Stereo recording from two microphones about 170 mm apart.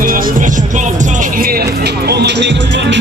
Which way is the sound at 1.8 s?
75° right (ahead or behind).